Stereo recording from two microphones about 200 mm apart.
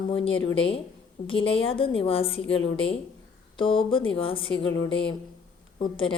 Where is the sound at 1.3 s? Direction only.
25° left (ahead or behind).